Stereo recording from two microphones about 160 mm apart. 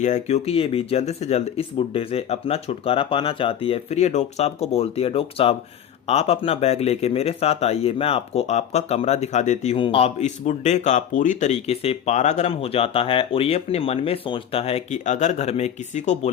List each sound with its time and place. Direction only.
0.0 s speech: 45° left (ahead or behind)
9.7 s speech: 35° left (ahead or behind)